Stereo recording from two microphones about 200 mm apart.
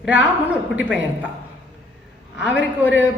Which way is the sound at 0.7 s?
5° right (ahead or behind).